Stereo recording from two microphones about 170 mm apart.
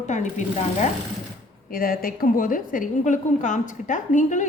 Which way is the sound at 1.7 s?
60° left (ahead or behind).